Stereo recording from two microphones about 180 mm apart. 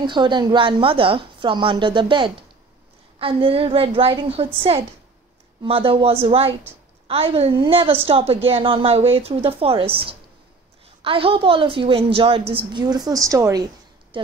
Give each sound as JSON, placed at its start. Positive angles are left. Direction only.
{"t": 0.0, "sound": "a woman's voice", "side_deg": -25}